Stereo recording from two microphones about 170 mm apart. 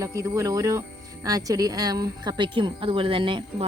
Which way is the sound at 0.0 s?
20° right (ahead or behind).